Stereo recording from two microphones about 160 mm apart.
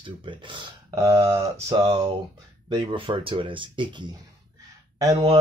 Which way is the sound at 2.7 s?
30° right (ahead or behind).